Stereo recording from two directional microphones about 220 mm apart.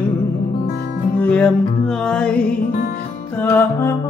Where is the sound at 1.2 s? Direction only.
5° left (ahead or behind).